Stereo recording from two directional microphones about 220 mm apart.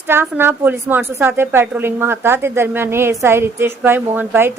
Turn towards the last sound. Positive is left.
turn(degrees=-10)  # may be behind; listen again after turning